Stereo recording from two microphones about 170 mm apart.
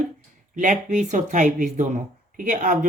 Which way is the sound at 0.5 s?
45° right (ahead or behind).